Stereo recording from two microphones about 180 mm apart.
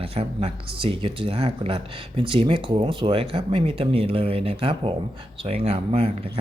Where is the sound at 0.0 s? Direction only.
30° right (ahead or behind).